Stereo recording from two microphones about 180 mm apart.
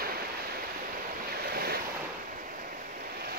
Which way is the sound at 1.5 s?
60° right (ahead or behind).